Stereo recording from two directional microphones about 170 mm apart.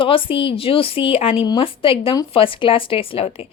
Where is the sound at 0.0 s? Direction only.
30° left (ahead or behind).